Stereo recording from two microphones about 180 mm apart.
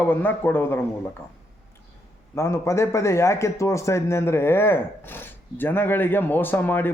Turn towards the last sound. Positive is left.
turn(degrees=10)  # may be behind; listen again after turning